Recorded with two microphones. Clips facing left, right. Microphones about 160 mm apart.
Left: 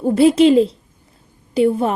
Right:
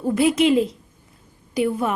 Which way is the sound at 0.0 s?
30° left (ahead or behind).